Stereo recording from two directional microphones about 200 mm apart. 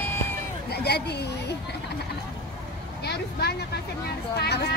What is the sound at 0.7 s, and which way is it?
Speech, 55° left (ahead or behind).